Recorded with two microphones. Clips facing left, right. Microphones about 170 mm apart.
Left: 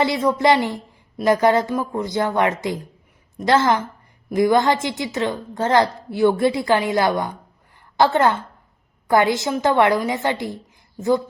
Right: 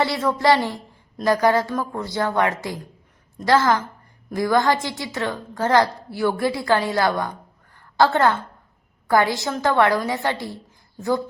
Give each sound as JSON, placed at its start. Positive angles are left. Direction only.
{"t": 0.0, "sound": "a woman's voice", "side_deg": 15}